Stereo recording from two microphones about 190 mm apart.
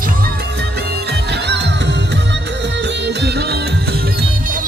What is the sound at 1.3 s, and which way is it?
Music, 65° right (ahead or behind).